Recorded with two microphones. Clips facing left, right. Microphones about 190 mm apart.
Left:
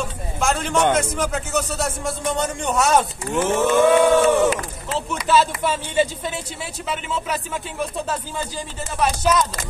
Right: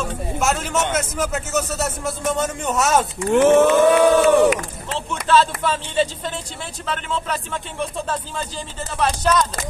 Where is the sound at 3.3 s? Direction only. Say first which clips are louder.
Right 8 dB; 70° right (ahead or behind).